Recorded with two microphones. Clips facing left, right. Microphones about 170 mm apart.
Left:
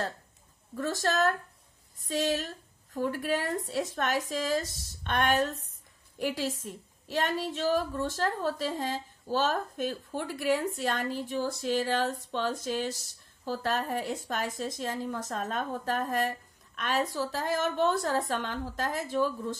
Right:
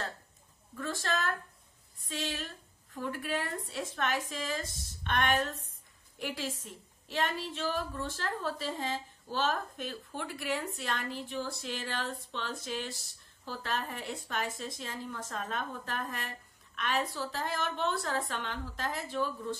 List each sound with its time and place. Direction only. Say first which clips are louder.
0.7 s a woman's voice: left 6 dB; 40° left (ahead or behind)